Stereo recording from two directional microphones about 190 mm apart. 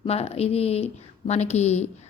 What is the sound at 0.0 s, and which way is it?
A woman's voice, 30° left (ahead or behind).